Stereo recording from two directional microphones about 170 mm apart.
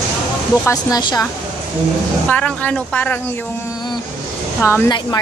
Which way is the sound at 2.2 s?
10° left (ahead or behind).